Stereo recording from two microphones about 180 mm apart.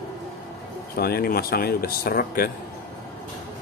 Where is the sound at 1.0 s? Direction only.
60° left (ahead or behind).